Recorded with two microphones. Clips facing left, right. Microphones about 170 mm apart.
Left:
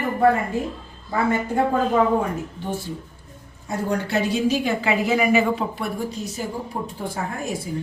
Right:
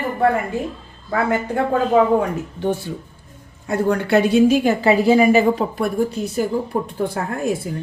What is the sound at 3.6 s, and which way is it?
Speech, 65° right (ahead or behind).